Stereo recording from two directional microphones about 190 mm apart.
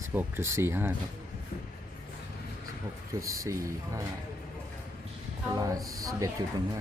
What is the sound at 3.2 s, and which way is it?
Speech, 15° right (ahead or behind).